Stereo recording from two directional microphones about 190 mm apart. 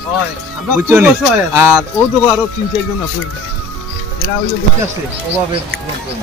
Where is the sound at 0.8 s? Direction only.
10° right (ahead or behind).